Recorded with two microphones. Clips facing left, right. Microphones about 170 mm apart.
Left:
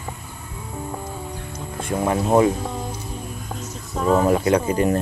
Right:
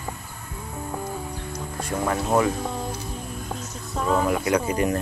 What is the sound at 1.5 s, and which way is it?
Speech, 25° left (ahead or behind).